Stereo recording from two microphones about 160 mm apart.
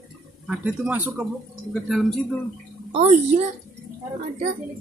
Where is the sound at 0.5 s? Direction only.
5° right (ahead or behind).